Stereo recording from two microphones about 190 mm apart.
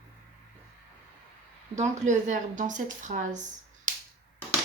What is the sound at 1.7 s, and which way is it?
Speech, 40° right (ahead or behind).